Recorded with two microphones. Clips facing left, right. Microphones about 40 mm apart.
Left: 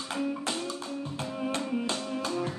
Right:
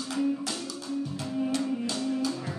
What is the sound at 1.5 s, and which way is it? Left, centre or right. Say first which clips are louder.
Music: right 1 dB; left.